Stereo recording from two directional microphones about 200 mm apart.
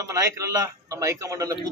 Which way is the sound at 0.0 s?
15° right (ahead or behind).